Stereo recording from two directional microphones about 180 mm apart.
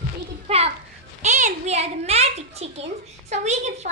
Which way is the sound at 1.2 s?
40° right (ahead or behind).